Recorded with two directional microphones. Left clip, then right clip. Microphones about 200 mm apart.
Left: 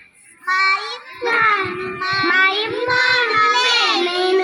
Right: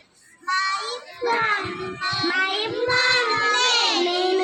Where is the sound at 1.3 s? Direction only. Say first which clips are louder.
Left 6 dB; 45° left (ahead or behind).